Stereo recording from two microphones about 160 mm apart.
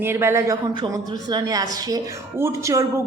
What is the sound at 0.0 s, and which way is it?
A woman's voice, 15° right (ahead or behind).